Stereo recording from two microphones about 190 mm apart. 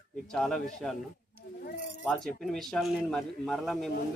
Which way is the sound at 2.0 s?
Centre (ahead or behind).